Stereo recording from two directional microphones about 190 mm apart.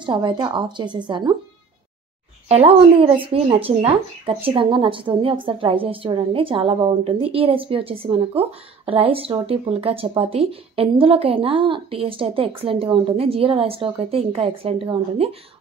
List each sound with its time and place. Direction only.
0.0 s speech: 25° right (ahead or behind)
2.4 s speech: 30° right (ahead or behind)